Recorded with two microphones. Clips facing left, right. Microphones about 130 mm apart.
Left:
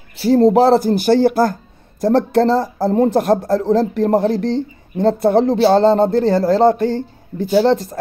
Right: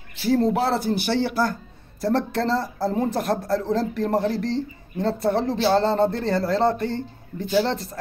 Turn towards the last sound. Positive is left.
turn(degrees=40)  # may be behind; listen again after turning